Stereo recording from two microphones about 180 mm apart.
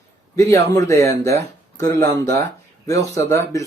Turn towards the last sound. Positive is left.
turn(degrees=15)  # may be behind; listen again after turning